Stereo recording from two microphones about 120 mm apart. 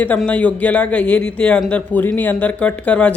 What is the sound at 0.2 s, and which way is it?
Speech, 10° left (ahead or behind).